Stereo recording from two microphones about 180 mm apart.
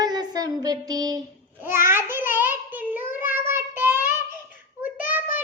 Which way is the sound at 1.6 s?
15° right (ahead or behind).